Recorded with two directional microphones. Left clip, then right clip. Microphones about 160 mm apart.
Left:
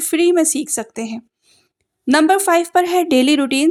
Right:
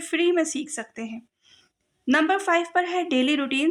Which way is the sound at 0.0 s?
45° left (ahead or behind).